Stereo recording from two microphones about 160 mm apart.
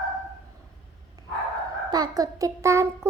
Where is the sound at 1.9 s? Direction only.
25° right (ahead or behind).